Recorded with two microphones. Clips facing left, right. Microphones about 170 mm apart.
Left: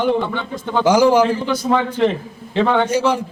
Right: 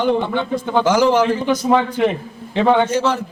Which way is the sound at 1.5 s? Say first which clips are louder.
Right 2 dB; 15° right (ahead or behind).